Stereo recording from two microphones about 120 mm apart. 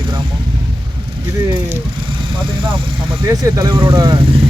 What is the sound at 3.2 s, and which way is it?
Speech, 30° right (ahead or behind).